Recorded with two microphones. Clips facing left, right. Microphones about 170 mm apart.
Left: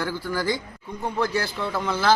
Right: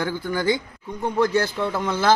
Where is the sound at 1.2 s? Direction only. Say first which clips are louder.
Right 5 dB; 40° right (ahead or behind).